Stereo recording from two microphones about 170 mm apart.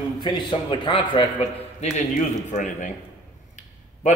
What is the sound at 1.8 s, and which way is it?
A man's voice, 45° left (ahead or behind).